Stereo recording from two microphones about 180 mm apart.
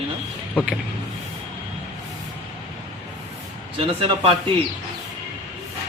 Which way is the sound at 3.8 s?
30° right (ahead or behind).